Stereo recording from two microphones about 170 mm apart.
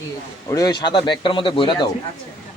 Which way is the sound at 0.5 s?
25° left (ahead or behind).